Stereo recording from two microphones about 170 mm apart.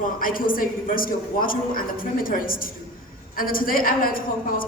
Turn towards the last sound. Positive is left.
turn(degrees=55)  # may be behind; listen again after turning